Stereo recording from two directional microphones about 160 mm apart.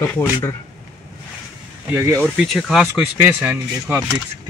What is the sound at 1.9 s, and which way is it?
Speech, 15° right (ahead or behind).